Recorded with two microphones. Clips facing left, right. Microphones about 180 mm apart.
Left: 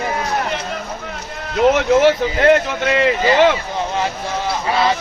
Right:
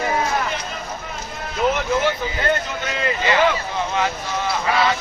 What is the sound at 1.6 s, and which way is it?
Speech, 75° left (ahead or behind).